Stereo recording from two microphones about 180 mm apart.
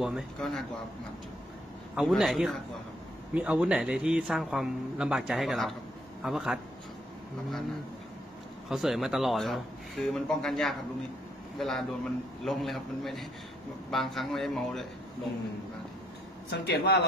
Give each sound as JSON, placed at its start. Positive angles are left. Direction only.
{"t": 0.0, "sound": "a man's voice", "side_deg": 0}
{"t": 2.0, "sound": "a man's voice", "side_deg": 0}
{"t": 8.6, "sound": "a man's voice", "side_deg": 0}
{"t": 16.4, "sound": "a man's voice", "side_deg": 70}